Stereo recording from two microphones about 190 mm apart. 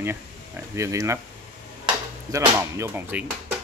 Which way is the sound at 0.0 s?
15° right (ahead or behind).